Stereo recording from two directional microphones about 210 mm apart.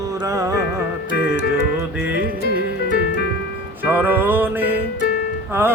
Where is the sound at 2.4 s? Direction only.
45° left (ahead or behind).